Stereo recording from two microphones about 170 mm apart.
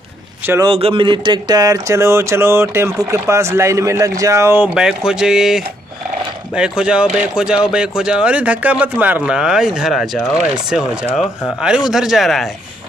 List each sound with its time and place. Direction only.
0.7 s speech: 30° right (ahead or behind); by 11.1 s 5° right (ahead or behind)
11.1 s speech: 10° left (ahead or behind)
11.9 s speech: centre (ahead or behind)